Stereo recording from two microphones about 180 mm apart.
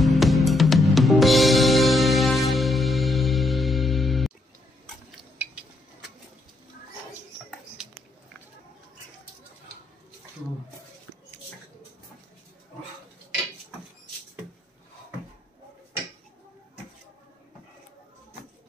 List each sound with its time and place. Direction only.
0.0 s music: centre (ahead or behind)